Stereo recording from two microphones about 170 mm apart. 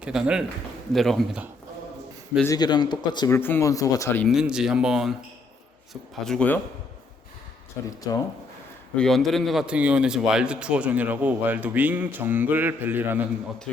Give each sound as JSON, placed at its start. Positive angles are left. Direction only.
{"t": 0.0, "sound": "speech", "side_deg": -5}
{"t": 2.4, "sound": "speech", "side_deg": 20}
{"t": 3.2, "sound": "speech", "side_deg": 15}
{"t": 4.2, "sound": "speech", "side_deg": 0}
{"t": 7.9, "sound": "speech", "side_deg": 20}
{"t": 9.0, "sound": "speech", "side_deg": 0}